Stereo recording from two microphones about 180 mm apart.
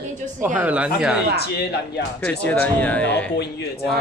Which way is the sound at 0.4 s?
10° right (ahead or behind).